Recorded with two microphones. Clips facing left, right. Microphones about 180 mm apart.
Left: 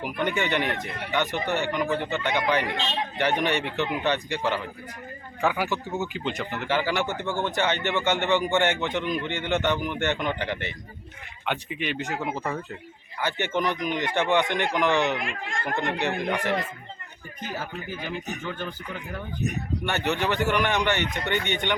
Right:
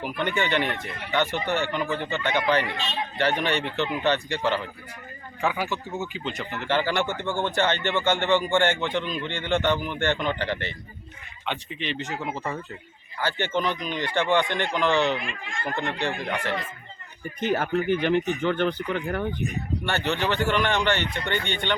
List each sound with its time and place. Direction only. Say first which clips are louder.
0.0 s speech: even; 10° left (ahead or behind)
5.4 s speech: left 1 dB; centre (ahead or behind)
5.6 s speech: left 2 dB; 15° left (ahead or behind)
17.4 s speech: right 10 dB; 75° right (ahead or behind)
19.8 s speech: even; 15° left (ahead or behind)